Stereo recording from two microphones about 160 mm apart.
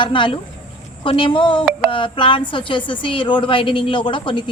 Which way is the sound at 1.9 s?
30° left (ahead or behind).